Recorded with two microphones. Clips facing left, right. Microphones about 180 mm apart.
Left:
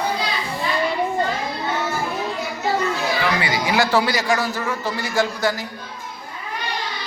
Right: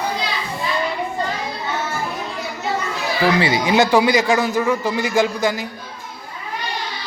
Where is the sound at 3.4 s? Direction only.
25° right (ahead or behind).